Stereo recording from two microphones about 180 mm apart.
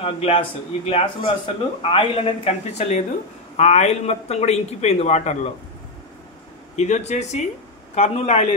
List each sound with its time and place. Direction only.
0.0 s a man's voice: 30° left (ahead or behind)
6.8 s a man's voice: 40° left (ahead or behind)